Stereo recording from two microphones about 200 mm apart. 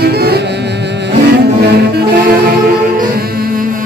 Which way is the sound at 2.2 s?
50° right (ahead or behind).